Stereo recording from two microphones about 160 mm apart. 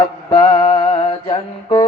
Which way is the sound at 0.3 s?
30° left (ahead or behind).